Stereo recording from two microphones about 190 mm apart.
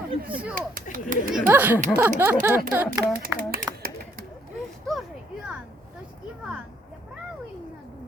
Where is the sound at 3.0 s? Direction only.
50° right (ahead or behind).